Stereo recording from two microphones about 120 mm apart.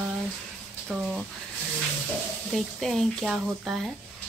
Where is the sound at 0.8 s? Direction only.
10° right (ahead or behind).